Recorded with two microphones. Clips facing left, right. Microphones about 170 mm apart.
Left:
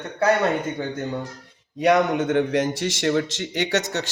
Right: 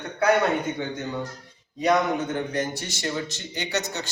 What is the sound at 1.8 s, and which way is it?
A man's voice, 75° left (ahead or behind).